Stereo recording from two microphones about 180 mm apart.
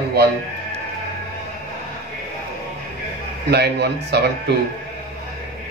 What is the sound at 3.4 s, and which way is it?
Speech, 65° right (ahead or behind).